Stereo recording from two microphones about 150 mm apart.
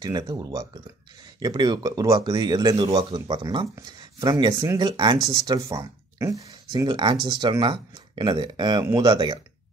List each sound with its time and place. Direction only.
0.0 s speech: 25° right (ahead or behind)